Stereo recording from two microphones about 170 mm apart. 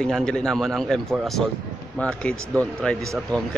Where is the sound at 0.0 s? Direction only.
5° left (ahead or behind).